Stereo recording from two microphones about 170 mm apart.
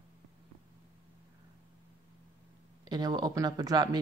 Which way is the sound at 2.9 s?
25° right (ahead or behind).